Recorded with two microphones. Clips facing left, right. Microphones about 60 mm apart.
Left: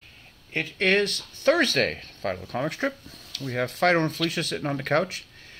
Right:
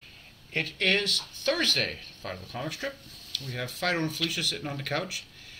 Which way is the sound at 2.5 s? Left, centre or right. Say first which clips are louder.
Left 6 dB; left.